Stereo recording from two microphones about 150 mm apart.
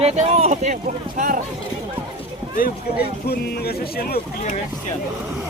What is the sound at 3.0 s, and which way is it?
Speech, 90° left.